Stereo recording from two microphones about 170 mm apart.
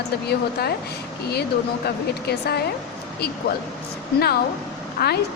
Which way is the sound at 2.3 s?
70° left (ahead or behind).